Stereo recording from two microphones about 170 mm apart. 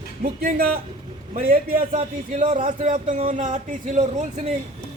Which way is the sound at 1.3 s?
50° right (ahead or behind).